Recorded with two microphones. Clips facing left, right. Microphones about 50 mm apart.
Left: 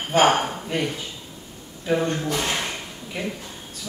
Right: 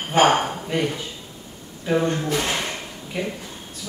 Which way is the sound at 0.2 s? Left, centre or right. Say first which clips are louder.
Right 2 dB; centre.